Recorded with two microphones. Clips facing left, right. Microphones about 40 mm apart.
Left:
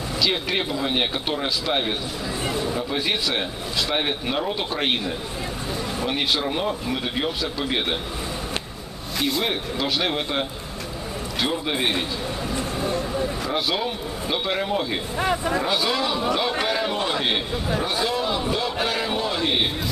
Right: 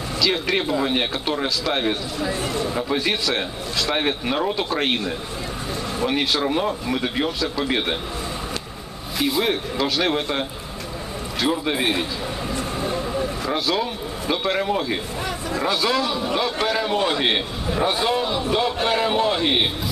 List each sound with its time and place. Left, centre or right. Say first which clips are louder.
0.2 s a man's voice: right 2 dB; centre
9.2 s speech: right 3 dB; centre
11.4 s speech: right 3 dB; centre
12.4 s vehicle: even; centre
14.3 s speech: right 2 dB; centre
15.1 s speech: left 4 dB; left
15.6 s a man's voice: right 2 dB; centre
16.9 s a man's voice: right 3 dB; centre